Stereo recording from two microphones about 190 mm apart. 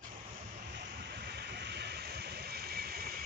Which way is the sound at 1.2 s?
60° right (ahead or behind).